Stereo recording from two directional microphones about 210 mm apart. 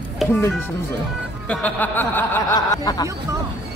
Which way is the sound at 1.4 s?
5° left (ahead or behind).